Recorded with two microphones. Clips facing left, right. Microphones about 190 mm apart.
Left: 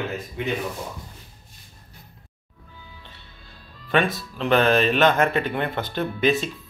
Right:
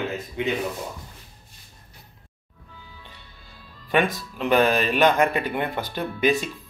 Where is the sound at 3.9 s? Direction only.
15° right (ahead or behind).